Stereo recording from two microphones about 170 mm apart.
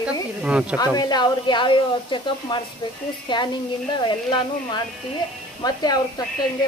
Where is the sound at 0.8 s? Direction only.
25° left (ahead or behind).